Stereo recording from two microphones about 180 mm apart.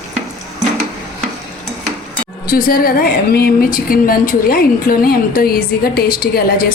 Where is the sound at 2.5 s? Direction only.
55° left (ahead or behind).